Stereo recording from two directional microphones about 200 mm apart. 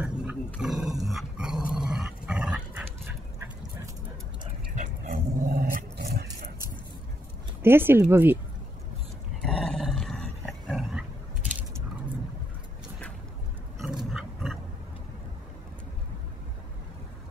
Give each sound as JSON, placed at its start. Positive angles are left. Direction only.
{"t": 0.0, "sound": "wild animals", "side_deg": -5}
{"t": 0.6, "sound": "dog", "side_deg": 0}
{"t": 4.7, "sound": "dog", "side_deg": -40}
{"t": 7.6, "sound": "speech", "side_deg": -10}
{"t": 9.4, "sound": "roar", "side_deg": 5}
{"t": 14.1, "sound": "a sound", "side_deg": 0}